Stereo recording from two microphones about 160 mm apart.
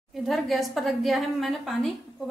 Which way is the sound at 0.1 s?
Centre (ahead or behind).